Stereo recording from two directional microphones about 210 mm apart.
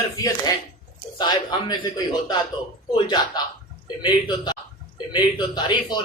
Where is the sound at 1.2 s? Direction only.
20° left (ahead or behind).